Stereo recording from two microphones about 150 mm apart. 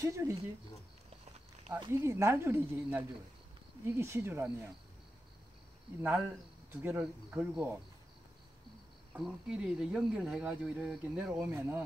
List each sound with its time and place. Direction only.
0.0 s speech: 20° right (ahead or behind)
1.9 s speech: 15° right (ahead or behind)
6.7 s speech: 15° right (ahead or behind)
9.1 s speech: 5° right (ahead or behind)